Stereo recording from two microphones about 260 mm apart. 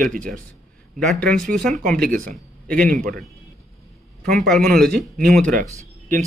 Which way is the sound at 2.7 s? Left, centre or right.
Centre.